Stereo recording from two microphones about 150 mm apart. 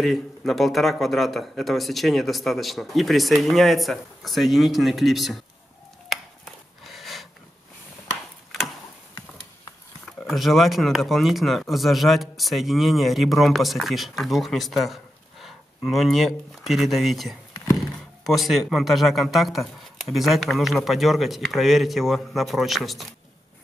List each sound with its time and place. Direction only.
0.0 s speech: centre (ahead or behind)
6.8 s a sound: centre (ahead or behind)
10.2 s speech: centre (ahead or behind)